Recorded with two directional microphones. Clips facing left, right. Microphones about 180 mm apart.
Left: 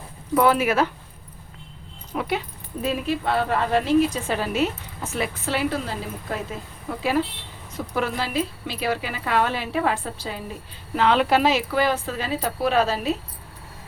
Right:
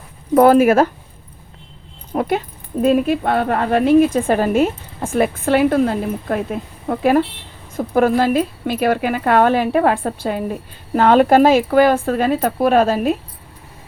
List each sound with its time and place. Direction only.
0.3 s speech: 45° right (ahead or behind)
2.1 s speech: 50° right (ahead or behind)